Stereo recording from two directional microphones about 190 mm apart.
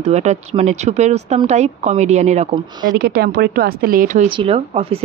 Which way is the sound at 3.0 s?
55° right (ahead or behind).